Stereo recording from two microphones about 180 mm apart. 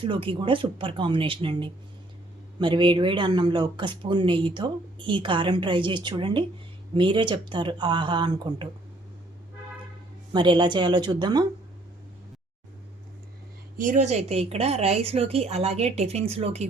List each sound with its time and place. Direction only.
0.0 s speech: 30° right (ahead or behind)
10.3 s speech: 25° right (ahead or behind)
13.7 s a woman's voice: 45° right (ahead or behind)